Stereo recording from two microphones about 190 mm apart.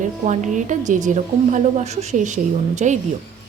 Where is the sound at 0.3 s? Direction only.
40° right (ahead or behind).